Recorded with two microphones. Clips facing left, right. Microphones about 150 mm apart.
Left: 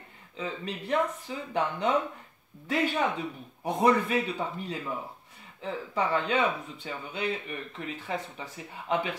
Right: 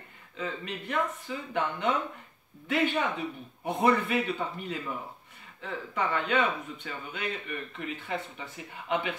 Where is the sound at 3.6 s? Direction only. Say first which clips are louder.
Left 1 dB; 35° left (ahead or behind).